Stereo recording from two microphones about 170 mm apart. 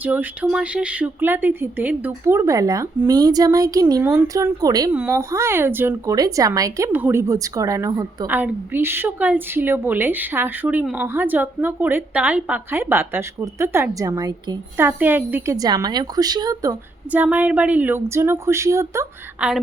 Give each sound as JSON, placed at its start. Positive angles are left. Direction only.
{"t": 0.0, "sound": "speech", "side_deg": -10}
{"t": 4.9, "sound": "speech", "side_deg": -10}
{"t": 14.8, "sound": "speech", "side_deg": -10}
{"t": 17.1, "sound": "speech", "side_deg": -10}
{"t": 19.4, "sound": "a woman's voice", "side_deg": -5}